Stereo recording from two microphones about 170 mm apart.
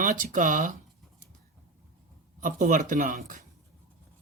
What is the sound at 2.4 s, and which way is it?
Speech, 50° right (ahead or behind).